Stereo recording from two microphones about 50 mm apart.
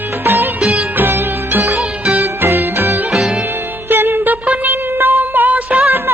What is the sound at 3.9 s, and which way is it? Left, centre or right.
Music, right.